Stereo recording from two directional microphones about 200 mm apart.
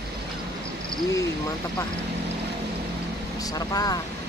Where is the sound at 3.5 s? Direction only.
20° left (ahead or behind).